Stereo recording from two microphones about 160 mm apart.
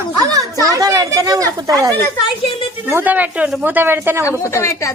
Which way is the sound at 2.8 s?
10° right (ahead or behind).